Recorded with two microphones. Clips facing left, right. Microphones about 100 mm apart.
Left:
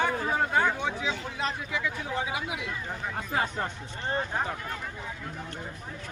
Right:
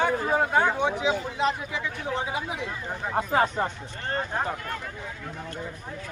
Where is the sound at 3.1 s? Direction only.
45° right (ahead or behind).